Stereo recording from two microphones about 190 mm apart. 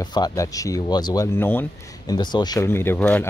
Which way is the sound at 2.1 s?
20° left (ahead or behind).